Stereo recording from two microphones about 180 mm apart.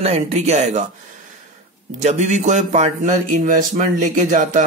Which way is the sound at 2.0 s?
40° right (ahead or behind).